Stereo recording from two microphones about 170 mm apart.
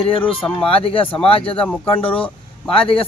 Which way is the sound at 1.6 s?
5° left (ahead or behind).